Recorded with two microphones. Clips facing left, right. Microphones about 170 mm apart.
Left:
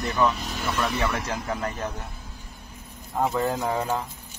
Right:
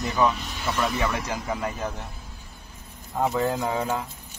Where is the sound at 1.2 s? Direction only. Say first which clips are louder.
Even; 10° right (ahead or behind).